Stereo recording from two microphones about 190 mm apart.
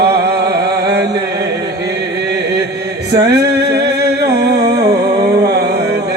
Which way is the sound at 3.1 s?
60° right (ahead or behind).